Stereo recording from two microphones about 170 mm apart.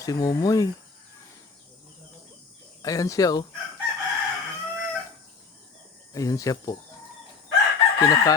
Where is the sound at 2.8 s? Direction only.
20° left (ahead or behind).